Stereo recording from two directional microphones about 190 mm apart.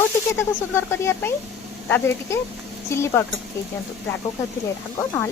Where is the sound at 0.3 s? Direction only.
15° left (ahead or behind).